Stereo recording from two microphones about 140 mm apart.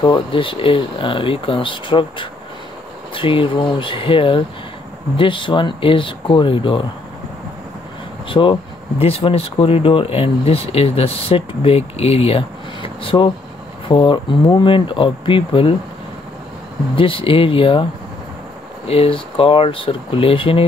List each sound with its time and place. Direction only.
0.0 s speech: 35° left (ahead or behind)
8.3 s speech: 35° left (ahead or behind)
16.9 s speech: 40° left (ahead or behind)
18.9 s speech: 40° left (ahead or behind)